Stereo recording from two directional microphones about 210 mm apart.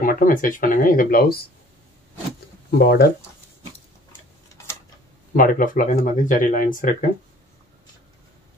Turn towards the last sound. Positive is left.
turn(degrees=40)  # may be behind; listen again after turning